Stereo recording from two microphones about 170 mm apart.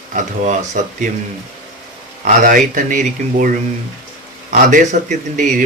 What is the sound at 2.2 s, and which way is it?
Speech, 50° right (ahead or behind).